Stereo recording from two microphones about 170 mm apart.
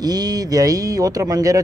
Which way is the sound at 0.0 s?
20° right (ahead or behind).